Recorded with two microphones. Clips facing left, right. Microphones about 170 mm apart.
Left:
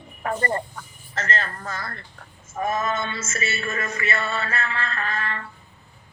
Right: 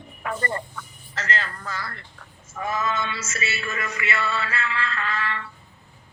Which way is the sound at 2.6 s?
45° left (ahead or behind).